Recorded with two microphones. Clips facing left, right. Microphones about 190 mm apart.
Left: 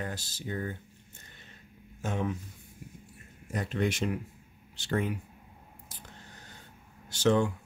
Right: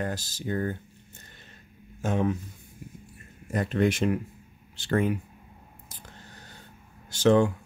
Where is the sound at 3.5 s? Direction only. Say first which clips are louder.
Right 6 dB; 55° right (ahead or behind).